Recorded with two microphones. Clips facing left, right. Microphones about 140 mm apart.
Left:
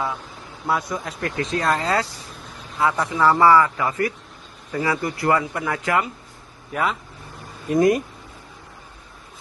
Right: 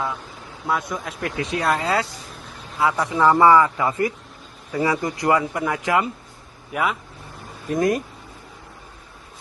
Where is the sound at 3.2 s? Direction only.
20° right (ahead or behind).